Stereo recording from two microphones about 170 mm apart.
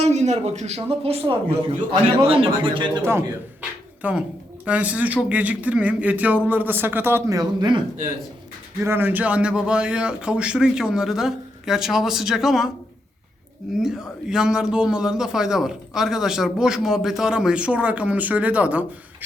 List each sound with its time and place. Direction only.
0.0 s speech: 40° right (ahead or behind)
3.0 s speech: 15° right (ahead or behind)
8.8 s a man's voice: 15° right (ahead or behind)
13.7 s a man's voice: centre (ahead or behind)